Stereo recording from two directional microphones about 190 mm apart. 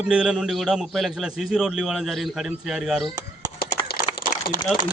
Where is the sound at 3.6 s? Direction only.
55° left (ahead or behind).